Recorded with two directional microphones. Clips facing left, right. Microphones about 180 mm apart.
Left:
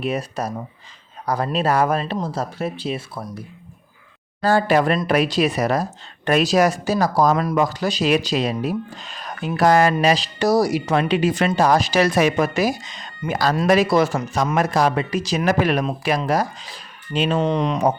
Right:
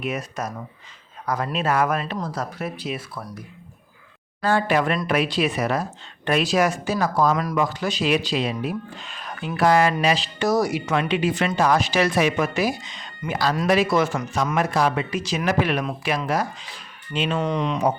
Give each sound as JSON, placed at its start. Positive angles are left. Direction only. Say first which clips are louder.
{"t": 0.0, "sound": "speech", "louder": "left 4 dB", "side_deg": 30}
{"t": 4.4, "sound": "speech", "louder": "left 4 dB", "side_deg": 35}
{"t": 17.7, "sound": "speech", "louder": "left 3 dB", "side_deg": 45}